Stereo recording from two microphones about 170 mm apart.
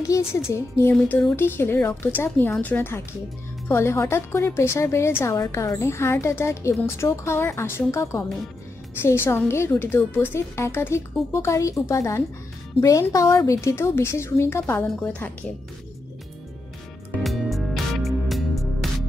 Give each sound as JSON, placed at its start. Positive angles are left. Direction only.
{"t": 0.1, "sound": "a woman's voice", "side_deg": 20}
{"t": 17.2, "sound": "music", "side_deg": 0}